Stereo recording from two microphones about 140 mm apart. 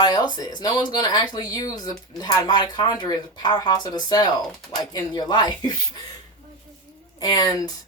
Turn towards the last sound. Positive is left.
turn(degrees=25)  # may be behind; listen again after turning